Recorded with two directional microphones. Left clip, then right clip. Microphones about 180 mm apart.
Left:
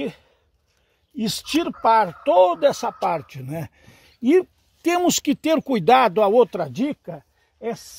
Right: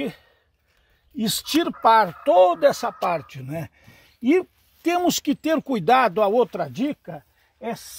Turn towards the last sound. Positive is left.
turn(degrees=55)  # may be behind; listen again after turning